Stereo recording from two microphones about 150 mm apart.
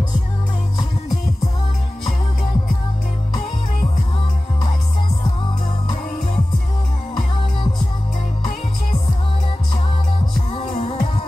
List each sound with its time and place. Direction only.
10.5 s music: 40° left (ahead or behind)